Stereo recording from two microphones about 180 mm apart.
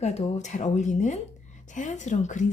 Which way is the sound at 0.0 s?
40° left (ahead or behind).